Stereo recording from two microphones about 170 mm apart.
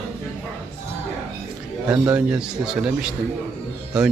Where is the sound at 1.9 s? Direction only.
10° right (ahead or behind).